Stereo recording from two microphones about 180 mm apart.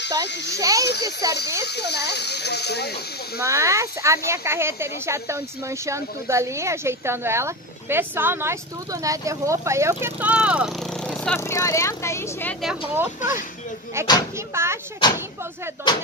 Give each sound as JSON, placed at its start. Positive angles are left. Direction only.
{"t": 0.6, "sound": "a child's voice", "side_deg": -20}
{"t": 1.6, "sound": "speech", "side_deg": 65}
{"t": 3.4, "sound": "speech", "side_deg": -15}
{"t": 11.1, "sound": "speech", "side_deg": 10}
{"t": 12.9, "sound": "speech", "side_deg": -10}
{"t": 15.0, "sound": "speech", "side_deg": 25}